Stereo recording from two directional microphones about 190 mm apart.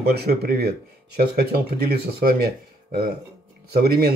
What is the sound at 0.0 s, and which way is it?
Speech, 55° right (ahead or behind).